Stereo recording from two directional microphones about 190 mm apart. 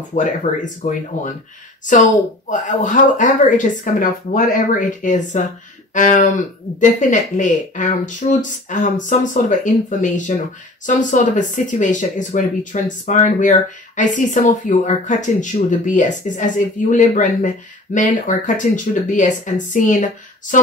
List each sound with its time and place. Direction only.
0.5 s speech: 40° left (ahead or behind)